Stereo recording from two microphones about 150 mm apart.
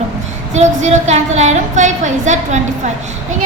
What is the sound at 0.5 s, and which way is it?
A woman's voice, 50° right (ahead or behind).